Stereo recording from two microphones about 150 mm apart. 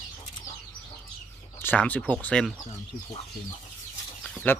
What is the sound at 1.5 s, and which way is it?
Speech, 10° left (ahead or behind).